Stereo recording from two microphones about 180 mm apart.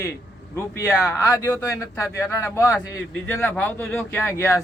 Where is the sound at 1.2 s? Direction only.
15° left (ahead or behind).